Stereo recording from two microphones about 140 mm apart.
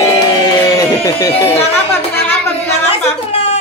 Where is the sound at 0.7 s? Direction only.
25° left (ahead or behind).